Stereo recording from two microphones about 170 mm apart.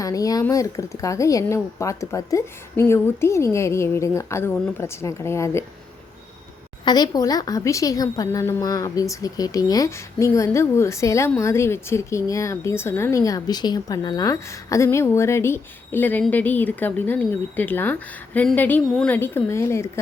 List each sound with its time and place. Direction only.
0.0 s speech: 20° left (ahead or behind)
6.8 s a woman's voice: 25° left (ahead or behind)